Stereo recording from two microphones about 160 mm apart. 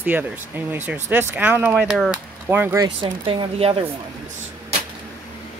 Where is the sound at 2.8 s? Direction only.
30° right (ahead or behind).